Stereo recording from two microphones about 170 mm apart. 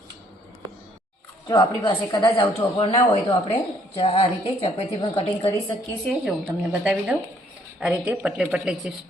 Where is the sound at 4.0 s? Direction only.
35° left (ahead or behind).